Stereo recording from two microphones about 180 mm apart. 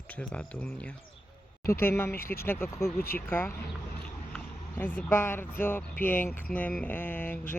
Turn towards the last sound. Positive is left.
turn(degrees=10)  # may be behind; listen again after turning